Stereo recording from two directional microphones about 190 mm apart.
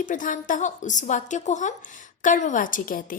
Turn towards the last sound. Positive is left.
turn(degrees=45)  # may be behind; listen again after turning